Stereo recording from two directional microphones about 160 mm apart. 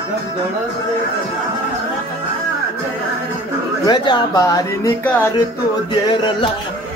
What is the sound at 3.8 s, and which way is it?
Speech, 30° left (ahead or behind).